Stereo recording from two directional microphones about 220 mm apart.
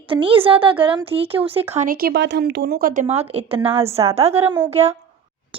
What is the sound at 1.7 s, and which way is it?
A woman's voice, 35° right (ahead or behind).